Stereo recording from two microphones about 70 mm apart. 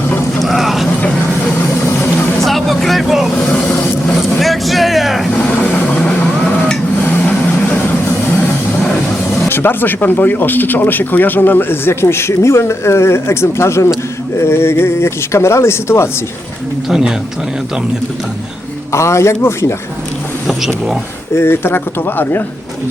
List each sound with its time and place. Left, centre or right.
0.3 s vehicle: centre
2.4 s vehicle: centre
3.3 s vehicle: centre
4.4 s vehicle: centre
5.4 s vehicle: left
6.0 s a sound: centre
7.0 s vehicle: left
9.5 s speech: left
18.9 s a man's voice: left
20.5 s speech: centre
21.3 s speech: left